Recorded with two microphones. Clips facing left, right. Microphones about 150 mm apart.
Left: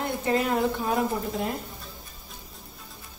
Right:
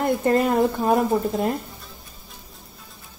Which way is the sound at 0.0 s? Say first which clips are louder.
Right 6 dB; 50° right (ahead or behind).